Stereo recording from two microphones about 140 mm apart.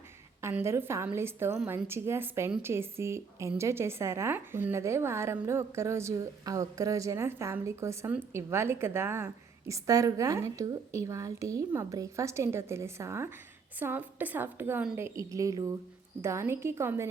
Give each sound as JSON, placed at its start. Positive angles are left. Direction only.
{"t": 0.4, "sound": "a woman's voice", "side_deg": -20}